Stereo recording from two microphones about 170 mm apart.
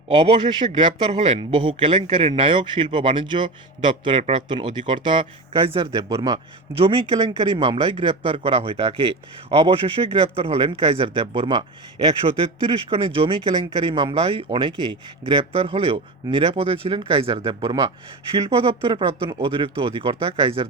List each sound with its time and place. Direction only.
0.7 s speech: 25° right (ahead or behind)
6.7 s speech: 30° right (ahead or behind)
17.6 s speech: 20° right (ahead or behind)